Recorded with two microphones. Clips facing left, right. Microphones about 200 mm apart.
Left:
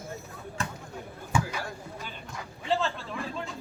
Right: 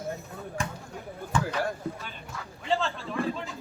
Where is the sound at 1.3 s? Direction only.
10° left (ahead or behind).